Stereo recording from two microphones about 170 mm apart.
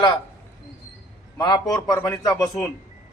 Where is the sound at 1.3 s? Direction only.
25° left (ahead or behind).